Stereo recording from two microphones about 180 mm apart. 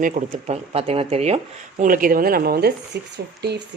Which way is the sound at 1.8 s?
50° right (ahead or behind).